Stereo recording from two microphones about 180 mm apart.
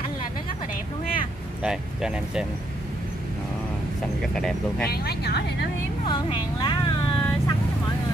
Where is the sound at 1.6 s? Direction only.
5° right (ahead or behind).